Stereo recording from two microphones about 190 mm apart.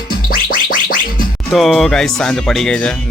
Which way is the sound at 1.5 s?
Centre (ahead or behind).